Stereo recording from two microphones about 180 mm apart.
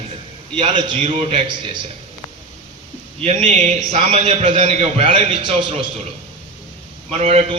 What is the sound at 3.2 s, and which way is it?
A man's voice, 35° right (ahead or behind).